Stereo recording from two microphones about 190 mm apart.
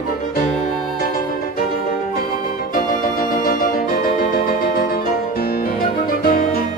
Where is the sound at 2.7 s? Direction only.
45° left (ahead or behind).